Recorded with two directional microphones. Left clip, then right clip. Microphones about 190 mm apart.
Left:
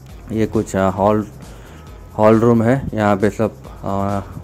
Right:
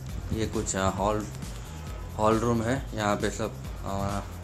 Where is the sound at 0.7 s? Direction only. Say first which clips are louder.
Left 11 dB; 40° left (ahead or behind).